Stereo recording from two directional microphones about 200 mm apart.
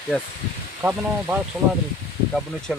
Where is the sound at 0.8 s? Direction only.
10° right (ahead or behind).